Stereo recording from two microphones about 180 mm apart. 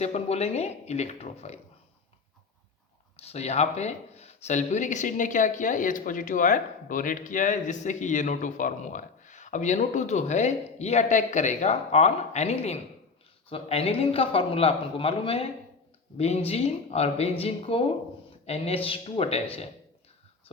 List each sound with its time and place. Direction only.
0.0 s a man's voice: 35° left (ahead or behind)
3.2 s a man's voice: 35° left (ahead or behind)